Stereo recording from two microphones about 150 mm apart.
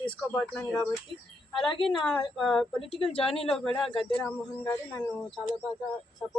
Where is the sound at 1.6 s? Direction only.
35° left (ahead or behind).